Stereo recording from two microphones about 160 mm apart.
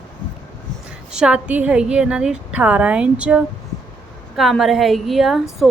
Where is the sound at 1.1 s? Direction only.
5° right (ahead or behind).